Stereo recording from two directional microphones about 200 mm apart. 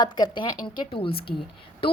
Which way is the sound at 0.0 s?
20° left (ahead or behind).